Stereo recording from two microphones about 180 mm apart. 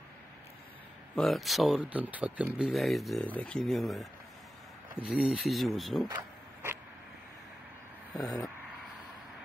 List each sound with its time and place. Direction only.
1.1 s speech: centre (ahead or behind)
6.0 s vehicle: 15° right (ahead or behind)